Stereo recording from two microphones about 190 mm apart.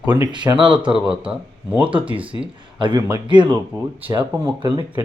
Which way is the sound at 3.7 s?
10° right (ahead or behind).